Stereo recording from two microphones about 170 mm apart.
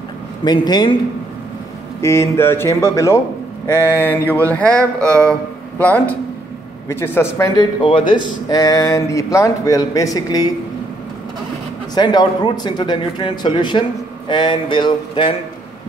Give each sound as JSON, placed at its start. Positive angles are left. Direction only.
{"t": 0.5, "sound": "speech", "side_deg": 25}
{"t": 2.0, "sound": "speech", "side_deg": 15}
{"t": 3.6, "sound": "mantra", "side_deg": 15}
{"t": 4.0, "sound": "speech", "side_deg": 10}
{"t": 11.9, "sound": "speech", "side_deg": 25}